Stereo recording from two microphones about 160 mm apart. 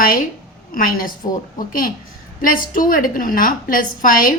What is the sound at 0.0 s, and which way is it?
A woman's voice, 65° left (ahead or behind).